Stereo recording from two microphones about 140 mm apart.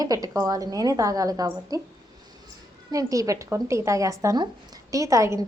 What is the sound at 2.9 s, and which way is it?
A woman's voice, 25° right (ahead or behind).